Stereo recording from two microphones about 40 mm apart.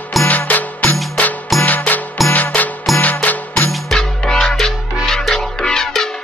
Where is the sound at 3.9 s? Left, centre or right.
Centre.